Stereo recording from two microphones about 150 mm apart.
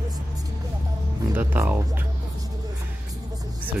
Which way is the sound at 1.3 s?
10° right (ahead or behind).